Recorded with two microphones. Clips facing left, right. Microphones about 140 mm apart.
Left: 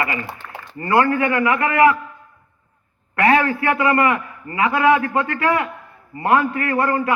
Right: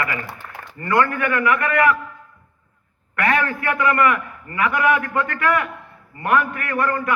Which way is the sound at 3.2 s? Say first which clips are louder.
Left 4 dB; 25° left (ahead or behind).